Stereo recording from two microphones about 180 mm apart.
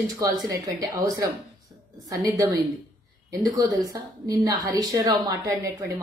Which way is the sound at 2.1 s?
20° right (ahead or behind).